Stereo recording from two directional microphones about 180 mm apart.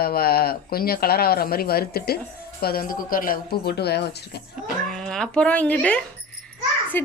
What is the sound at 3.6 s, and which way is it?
Speech, 65° left (ahead or behind).